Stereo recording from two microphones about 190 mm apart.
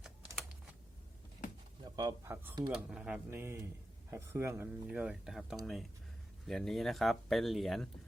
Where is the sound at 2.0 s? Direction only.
15° right (ahead or behind).